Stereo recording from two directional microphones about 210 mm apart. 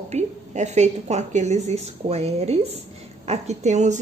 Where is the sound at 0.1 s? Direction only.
35° right (ahead or behind).